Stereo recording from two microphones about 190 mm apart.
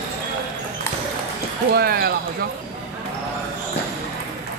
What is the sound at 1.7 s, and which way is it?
Speech, 55° right (ahead or behind).